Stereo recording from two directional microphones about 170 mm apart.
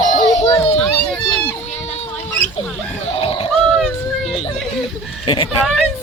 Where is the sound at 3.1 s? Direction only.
35° left (ahead or behind).